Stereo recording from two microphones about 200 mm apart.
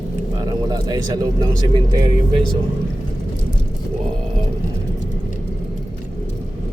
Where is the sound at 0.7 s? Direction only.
20° right (ahead or behind).